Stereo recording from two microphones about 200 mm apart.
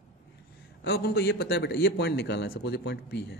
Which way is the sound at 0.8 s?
50° left (ahead or behind).